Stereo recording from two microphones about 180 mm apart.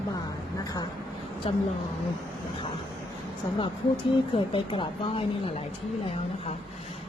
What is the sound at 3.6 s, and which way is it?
A woman's voice, 30° left (ahead or behind).